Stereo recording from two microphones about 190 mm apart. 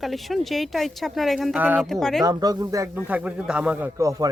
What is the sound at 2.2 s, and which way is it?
Speech, 20° right (ahead or behind).